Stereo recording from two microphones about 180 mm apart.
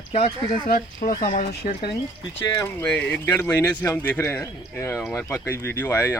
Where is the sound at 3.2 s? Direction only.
10° left (ahead or behind).